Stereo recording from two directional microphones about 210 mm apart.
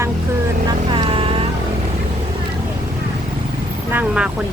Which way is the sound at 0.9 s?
25° right (ahead or behind).